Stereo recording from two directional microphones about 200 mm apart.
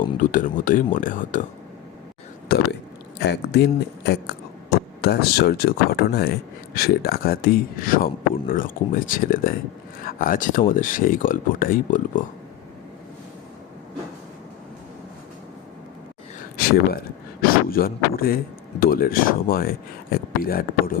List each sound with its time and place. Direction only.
0.2 s speech: 40° left (ahead or behind)
3.2 s speech: 55° left (ahead or behind)
17.4 s speech: 50° left (ahead or behind)